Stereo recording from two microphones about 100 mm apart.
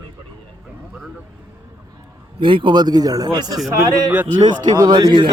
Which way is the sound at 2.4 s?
55° right (ahead or behind).